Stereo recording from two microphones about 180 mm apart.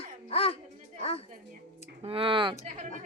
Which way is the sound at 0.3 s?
35° left (ahead or behind).